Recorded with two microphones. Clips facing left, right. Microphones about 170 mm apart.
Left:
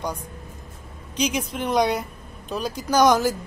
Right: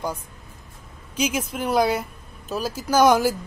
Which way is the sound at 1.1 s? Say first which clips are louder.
Even; 5° right (ahead or behind).